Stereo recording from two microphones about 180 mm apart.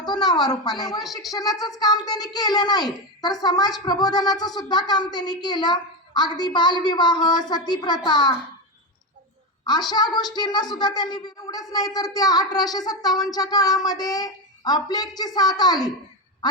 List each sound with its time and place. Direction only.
0.1 s a child's voice: 25° left (ahead or behind)
0.9 s speech: centre (ahead or behind)
1.3 s a child's voice: 20° left (ahead or behind)
9.6 s a child's voice: 20° left (ahead or behind)